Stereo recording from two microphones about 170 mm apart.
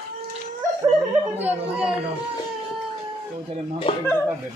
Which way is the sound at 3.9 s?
30° left (ahead or behind).